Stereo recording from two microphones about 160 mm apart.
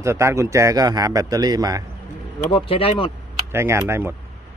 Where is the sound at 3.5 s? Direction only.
15° right (ahead or behind).